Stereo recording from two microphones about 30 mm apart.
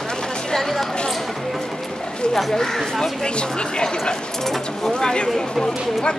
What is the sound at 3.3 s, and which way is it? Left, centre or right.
A woman's voice, left.